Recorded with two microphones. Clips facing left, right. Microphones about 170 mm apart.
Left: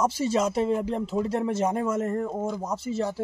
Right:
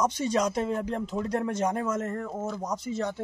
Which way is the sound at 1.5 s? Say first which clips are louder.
Left 3 dB; 30° left (ahead or behind).